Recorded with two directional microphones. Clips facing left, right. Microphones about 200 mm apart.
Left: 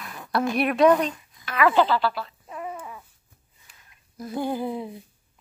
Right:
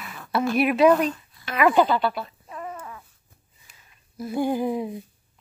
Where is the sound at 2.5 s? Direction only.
10° left (ahead or behind).